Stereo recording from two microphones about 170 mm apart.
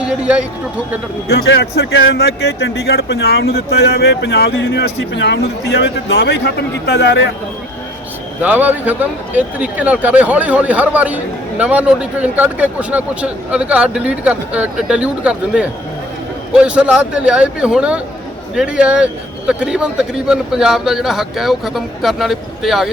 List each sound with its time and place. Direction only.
0.0 s speech: 5° right (ahead or behind)
1.3 s speech: 80° left
5.1 s a man's voice: 85° left
8.4 s a man's voice: 10° right (ahead or behind)